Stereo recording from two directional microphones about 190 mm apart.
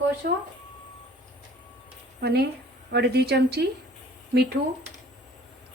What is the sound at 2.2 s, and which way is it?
A woman's voice, 60° right (ahead or behind).